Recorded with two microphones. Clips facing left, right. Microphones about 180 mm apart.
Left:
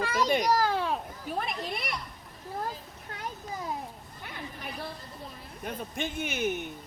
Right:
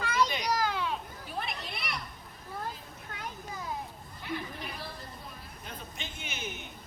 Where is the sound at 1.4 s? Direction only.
45° left (ahead or behind).